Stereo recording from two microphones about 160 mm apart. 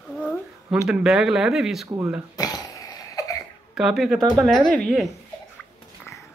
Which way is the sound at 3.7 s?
Centre (ahead or behind).